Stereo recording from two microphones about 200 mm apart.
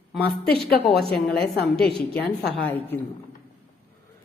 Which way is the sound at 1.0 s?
50° left (ahead or behind).